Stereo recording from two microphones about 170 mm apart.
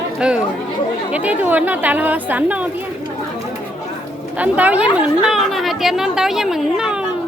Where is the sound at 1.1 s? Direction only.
10° right (ahead or behind).